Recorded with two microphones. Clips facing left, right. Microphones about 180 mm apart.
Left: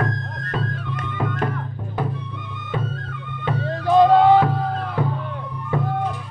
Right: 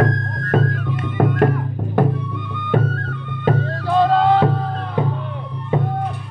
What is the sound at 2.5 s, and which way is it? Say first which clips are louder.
Music: right 8 dB; 60° right (ahead or behind).